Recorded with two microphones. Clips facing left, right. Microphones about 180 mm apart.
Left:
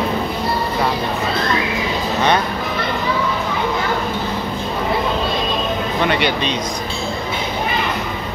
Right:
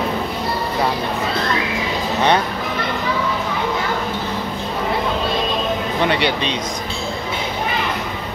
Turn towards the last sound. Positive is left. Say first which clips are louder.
# left 1 dB
turn(degrees=-30)  # may be behind; listen again after turning